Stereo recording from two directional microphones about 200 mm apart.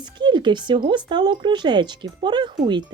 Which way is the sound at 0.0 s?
25° right (ahead or behind).